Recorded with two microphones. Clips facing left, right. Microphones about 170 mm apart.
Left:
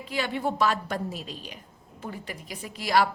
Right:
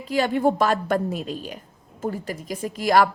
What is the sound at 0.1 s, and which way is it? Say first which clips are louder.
A woman's voice: right 8 dB; 45° right (ahead or behind).